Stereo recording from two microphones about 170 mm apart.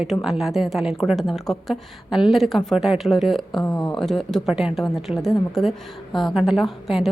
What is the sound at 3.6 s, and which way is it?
Speech, 20° left (ahead or behind).